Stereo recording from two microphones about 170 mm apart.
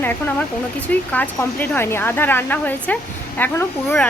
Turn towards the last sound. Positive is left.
turn(degrees=10)  # may be behind; listen again after turning